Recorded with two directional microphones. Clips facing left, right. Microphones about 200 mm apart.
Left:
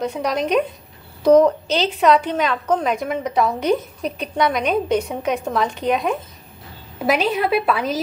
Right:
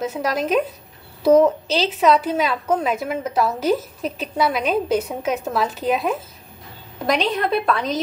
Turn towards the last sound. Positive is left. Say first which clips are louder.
# left 1 dB
turn(degrees=5)  # may be behind; listen again after turning